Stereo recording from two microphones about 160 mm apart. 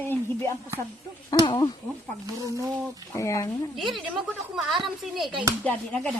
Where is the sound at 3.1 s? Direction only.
20° left (ahead or behind).